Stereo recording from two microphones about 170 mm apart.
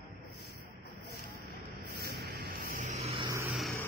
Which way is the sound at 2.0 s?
60° right (ahead or behind).